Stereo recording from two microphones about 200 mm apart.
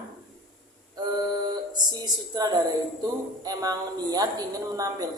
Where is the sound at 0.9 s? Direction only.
20° right (ahead or behind).